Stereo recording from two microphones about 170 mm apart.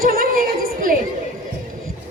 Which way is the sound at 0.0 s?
60° right (ahead or behind).